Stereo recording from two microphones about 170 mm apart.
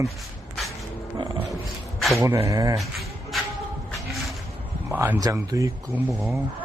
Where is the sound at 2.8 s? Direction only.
Centre (ahead or behind).